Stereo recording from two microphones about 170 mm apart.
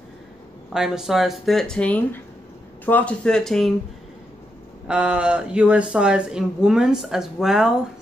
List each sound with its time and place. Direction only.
0.7 s speech: 5° right (ahead or behind)
4.8 s speech: 5° right (ahead or behind)